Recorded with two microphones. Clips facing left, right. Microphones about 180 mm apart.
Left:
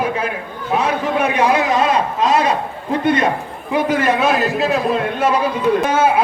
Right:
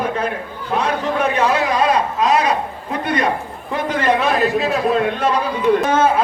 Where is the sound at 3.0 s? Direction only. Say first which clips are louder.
Left 4 dB; 25° left (ahead or behind).